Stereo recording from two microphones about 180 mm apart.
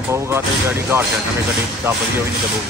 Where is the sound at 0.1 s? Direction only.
15° right (ahead or behind).